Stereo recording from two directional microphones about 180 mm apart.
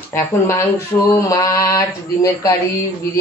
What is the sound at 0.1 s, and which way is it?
A woman's voice, 15° left (ahead or behind).